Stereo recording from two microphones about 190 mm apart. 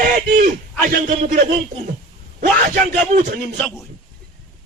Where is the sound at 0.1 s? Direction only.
45° right (ahead or behind).